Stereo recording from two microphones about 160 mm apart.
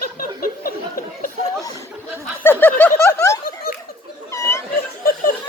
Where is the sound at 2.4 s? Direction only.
15° left (ahead or behind).